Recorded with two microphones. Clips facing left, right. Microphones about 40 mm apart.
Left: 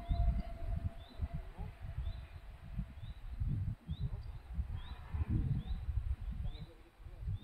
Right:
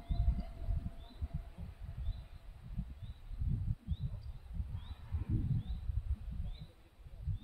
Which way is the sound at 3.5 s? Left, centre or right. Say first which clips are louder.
Even; left.